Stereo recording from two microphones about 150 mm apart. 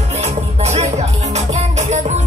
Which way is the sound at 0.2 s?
45° right (ahead or behind).